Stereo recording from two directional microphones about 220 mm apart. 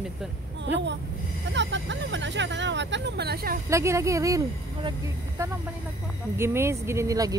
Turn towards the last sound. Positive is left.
turn(degrees=-15)  # may be behind; listen again after turning